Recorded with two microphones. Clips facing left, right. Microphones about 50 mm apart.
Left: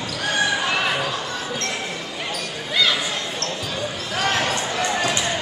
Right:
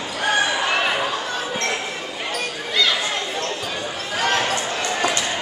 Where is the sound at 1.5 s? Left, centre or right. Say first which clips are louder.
Right 4 dB; right.